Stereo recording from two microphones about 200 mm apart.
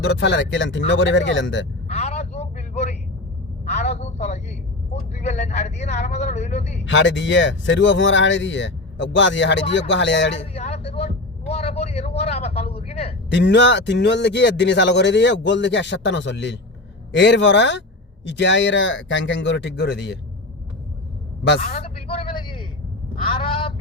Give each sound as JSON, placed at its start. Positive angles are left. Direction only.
{"t": 0.0, "sound": "speech", "side_deg": 60}
{"t": 1.9, "sound": "a sound", "side_deg": 30}
{"t": 3.7, "sound": "vehicle", "side_deg": 35}
{"t": 5.2, "sound": "a man's voice", "side_deg": 35}
{"t": 6.8, "sound": "speech", "side_deg": 65}
{"t": 10.5, "sound": "a sound", "side_deg": 30}
{"t": 11.4, "sound": "vehicle", "side_deg": 30}
{"t": 13.3, "sound": "speech", "side_deg": 65}
{"t": 21.8, "sound": "a sound", "side_deg": 30}
{"t": 23.2, "sound": "speech", "side_deg": 25}